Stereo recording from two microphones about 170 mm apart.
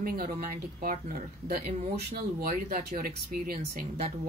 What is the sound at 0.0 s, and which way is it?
Speech, 55° right (ahead or behind).